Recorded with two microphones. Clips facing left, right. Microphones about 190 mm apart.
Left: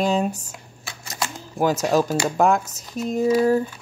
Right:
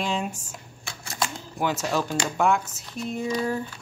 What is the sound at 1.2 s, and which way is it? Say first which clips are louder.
Camera: even; centre (ahead or behind).